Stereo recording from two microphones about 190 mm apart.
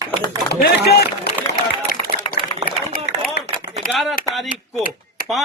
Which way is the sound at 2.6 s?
35° right (ahead or behind).